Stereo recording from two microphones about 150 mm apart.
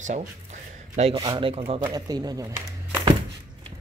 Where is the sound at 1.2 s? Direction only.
35° right (ahead or behind).